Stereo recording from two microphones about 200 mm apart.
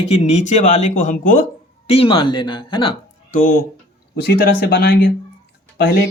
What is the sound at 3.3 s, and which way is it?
Speech, 45° left (ahead or behind).